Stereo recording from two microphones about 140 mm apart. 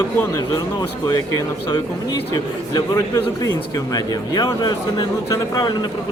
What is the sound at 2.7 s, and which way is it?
A man's voice, 25° left (ahead or behind).